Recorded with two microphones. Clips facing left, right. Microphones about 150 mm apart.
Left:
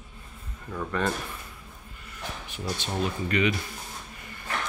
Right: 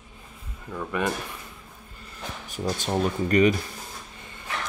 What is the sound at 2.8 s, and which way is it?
Speech, 45° right (ahead or behind).